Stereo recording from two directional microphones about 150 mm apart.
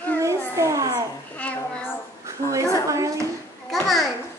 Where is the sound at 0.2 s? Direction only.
20° right (ahead or behind).